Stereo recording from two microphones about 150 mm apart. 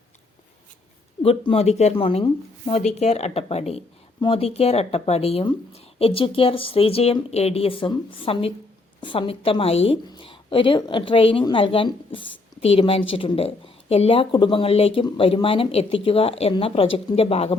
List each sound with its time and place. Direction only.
1.2 s a woman's voice: 40° left (ahead or behind)